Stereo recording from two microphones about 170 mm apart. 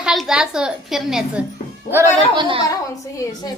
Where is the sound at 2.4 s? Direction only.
30° right (ahead or behind).